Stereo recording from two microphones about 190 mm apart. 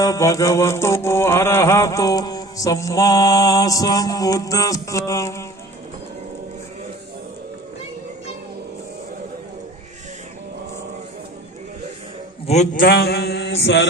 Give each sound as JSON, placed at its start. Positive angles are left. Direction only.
{"t": 0.0, "sound": "mantra", "side_deg": 15}
{"t": 12.5, "sound": "a man's voice", "side_deg": 40}